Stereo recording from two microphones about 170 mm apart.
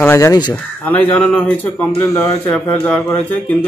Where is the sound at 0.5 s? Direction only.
10° left (ahead or behind).